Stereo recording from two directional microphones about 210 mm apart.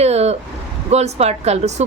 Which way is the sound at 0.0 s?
30° right (ahead or behind).